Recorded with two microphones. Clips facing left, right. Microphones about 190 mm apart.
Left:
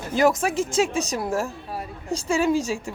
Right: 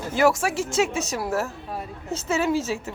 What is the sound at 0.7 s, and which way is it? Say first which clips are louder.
Speech: even; 20° right (ahead or behind).